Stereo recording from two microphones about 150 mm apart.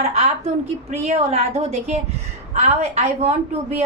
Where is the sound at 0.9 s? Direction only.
45° right (ahead or behind).